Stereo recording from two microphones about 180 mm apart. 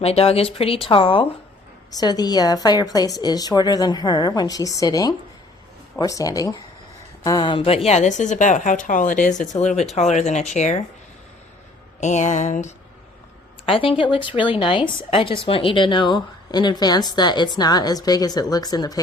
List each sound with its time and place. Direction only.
0.0 s a woman's voice: 35° left (ahead or behind)
11.9 s speech: 40° left (ahead or behind)
13.7 s a woman's voice: 30° left (ahead or behind)